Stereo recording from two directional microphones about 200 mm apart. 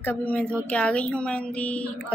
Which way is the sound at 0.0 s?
5° left (ahead or behind).